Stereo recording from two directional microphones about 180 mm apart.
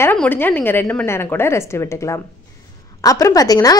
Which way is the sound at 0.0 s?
10° left (ahead or behind).